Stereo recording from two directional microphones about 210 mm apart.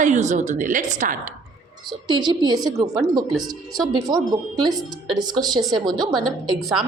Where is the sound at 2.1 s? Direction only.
20° right (ahead or behind).